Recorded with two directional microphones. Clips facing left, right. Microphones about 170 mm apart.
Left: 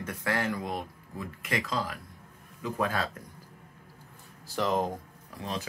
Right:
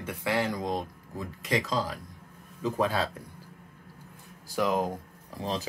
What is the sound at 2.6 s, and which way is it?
Speech, 25° right (ahead or behind).